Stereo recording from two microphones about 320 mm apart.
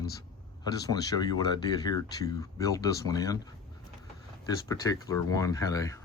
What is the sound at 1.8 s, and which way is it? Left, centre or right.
Speech, centre.